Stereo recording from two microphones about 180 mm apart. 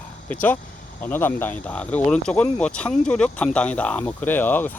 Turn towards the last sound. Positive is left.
turn(degrees=10)  # may be behind; listen again after turning